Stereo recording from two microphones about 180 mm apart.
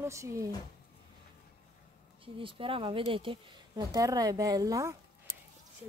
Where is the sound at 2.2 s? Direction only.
30° right (ahead or behind).